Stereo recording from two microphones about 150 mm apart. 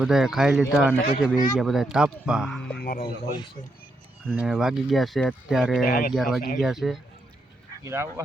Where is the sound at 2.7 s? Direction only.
90° left.